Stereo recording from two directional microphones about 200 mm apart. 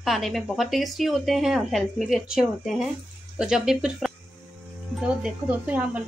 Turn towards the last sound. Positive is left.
turn(degrees=-10)  # may be behind; listen again after turning